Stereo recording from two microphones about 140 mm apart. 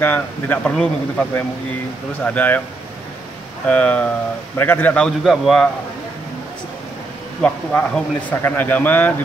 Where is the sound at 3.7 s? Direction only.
10° left (ahead or behind).